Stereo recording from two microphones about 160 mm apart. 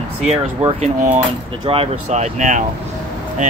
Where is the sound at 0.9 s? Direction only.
50° right (ahead or behind).